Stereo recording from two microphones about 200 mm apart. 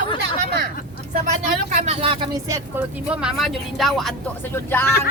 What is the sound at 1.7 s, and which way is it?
Speech, 30° right (ahead or behind).